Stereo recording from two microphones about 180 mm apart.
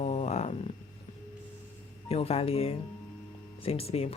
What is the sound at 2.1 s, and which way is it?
Speech, 35° left (ahead or behind).